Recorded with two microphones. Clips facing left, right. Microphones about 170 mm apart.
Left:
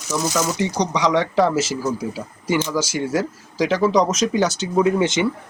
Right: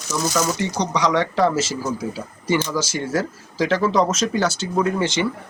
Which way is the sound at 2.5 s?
10° left (ahead or behind).